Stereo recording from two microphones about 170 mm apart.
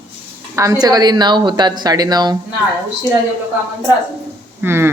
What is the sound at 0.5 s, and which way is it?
Speech, 20° right (ahead or behind).